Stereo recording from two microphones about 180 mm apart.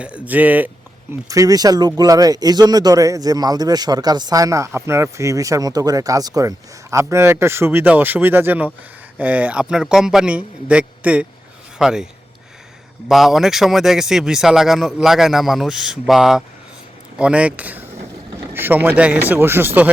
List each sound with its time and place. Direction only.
0.0 s a man's voice: 5° right (ahead or behind)
1.3 s a man's voice: 20° right (ahead or behind); by 12.0 s 5° right (ahead or behind)
13.1 s a man's voice: centre (ahead or behind)